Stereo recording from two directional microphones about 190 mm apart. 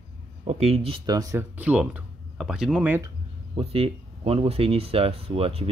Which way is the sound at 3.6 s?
30° right (ahead or behind).